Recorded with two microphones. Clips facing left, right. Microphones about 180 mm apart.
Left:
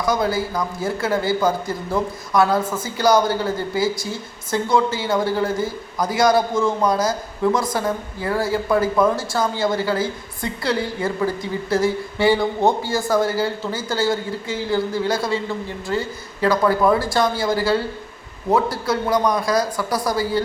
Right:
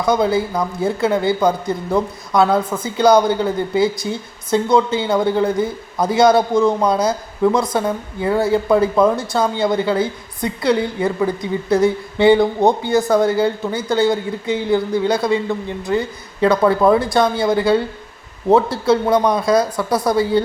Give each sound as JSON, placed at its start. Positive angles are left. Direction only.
{"t": 0.0, "sound": "a woman's voice", "side_deg": -25}